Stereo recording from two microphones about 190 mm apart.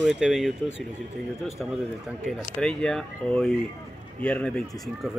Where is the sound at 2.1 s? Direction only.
Centre (ahead or behind).